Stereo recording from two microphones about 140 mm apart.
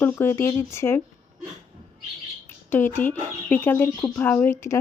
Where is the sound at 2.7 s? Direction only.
15° left (ahead or behind).